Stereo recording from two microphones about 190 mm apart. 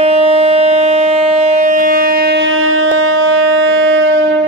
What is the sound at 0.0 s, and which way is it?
Civil defense siren, 30° right (ahead or behind).